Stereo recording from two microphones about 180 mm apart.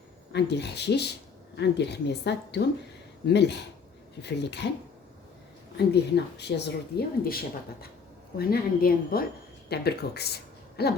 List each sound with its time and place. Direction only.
0.3 s a woman's voice: 70° left (ahead or behind)
5.7 s speech: 65° left (ahead or behind)
8.4 s speech: 55° left (ahead or behind)